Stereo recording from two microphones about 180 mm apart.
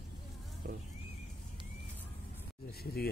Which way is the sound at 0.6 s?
55° right (ahead or behind).